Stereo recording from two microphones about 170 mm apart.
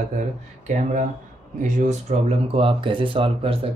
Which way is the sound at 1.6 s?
45° right (ahead or behind).